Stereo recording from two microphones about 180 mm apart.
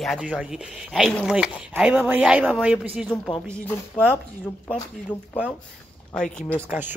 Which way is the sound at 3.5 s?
10° left (ahead or behind).